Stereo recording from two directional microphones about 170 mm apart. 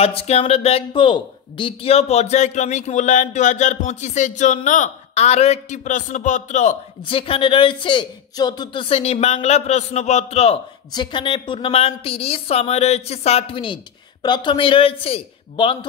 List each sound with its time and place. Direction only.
0.0 s a woman's voice: 35° left (ahead or behind)
7.1 s a man's voice: 35° left (ahead or behind)
10.9 s a man's voice: 25° left (ahead or behind)